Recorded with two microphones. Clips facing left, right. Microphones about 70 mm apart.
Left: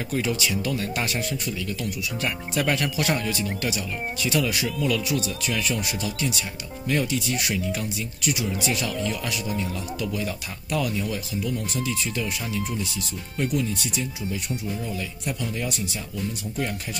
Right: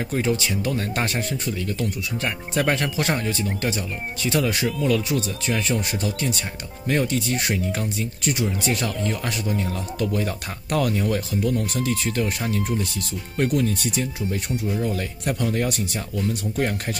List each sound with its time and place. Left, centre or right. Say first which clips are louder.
0.1 s speech: right 1 dB; right